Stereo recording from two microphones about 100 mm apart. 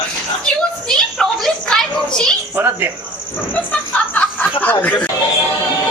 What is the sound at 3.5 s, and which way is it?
Speech, 15° left (ahead or behind).